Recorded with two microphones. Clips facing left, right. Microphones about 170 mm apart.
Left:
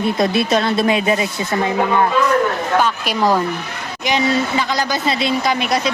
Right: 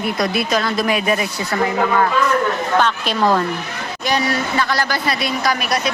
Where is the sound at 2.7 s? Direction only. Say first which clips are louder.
Even; 10° left (ahead or behind).